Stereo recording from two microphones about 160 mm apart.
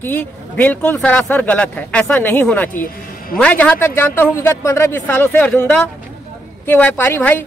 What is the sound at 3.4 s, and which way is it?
Speech, 10° left (ahead or behind).